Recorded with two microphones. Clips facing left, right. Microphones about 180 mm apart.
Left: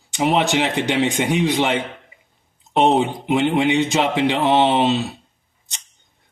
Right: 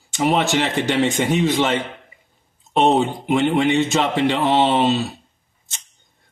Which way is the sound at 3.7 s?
20° left (ahead or behind).